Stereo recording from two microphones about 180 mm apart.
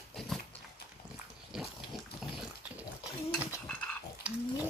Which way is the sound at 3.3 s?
10° right (ahead or behind).